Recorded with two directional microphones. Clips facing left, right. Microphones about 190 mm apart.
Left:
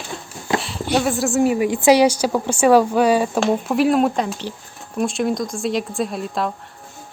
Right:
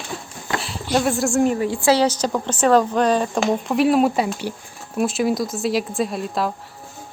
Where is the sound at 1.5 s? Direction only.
15° left (ahead or behind).